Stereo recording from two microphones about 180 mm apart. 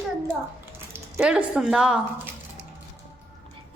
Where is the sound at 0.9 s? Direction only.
5° right (ahead or behind).